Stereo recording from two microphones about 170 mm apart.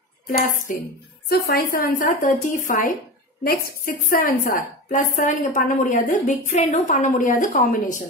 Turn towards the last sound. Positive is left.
turn(degrees=50)  # may be behind; listen again after turning